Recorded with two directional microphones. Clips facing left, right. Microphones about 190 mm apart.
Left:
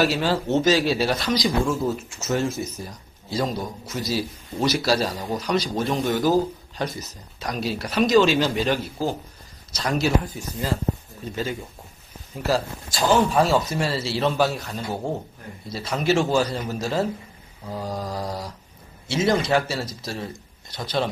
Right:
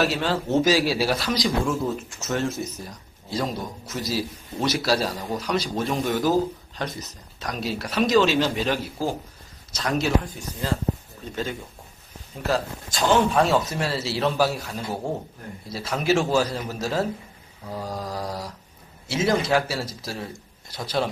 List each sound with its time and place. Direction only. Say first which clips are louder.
0.0 s speech: left 2 dB; centre (ahead or behind)
12.4 s speech: left 1 dB; 5° left (ahead or behind)